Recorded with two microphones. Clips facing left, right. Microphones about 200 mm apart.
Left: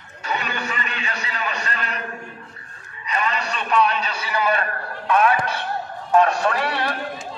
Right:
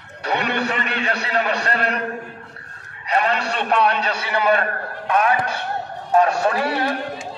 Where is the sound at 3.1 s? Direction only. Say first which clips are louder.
Right 4 dB; 65° right (ahead or behind); by 5.3 s 45° right (ahead or behind).